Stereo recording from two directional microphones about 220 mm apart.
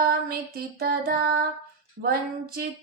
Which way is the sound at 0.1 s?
45° right (ahead or behind).